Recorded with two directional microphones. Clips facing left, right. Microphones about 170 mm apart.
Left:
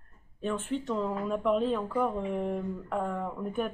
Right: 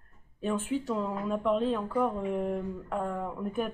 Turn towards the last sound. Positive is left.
turn(degrees=-5)  # may be behind; listen again after turning